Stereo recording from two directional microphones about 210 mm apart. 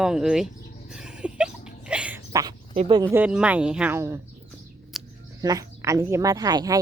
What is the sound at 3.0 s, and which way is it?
Speech, 10° right (ahead or behind).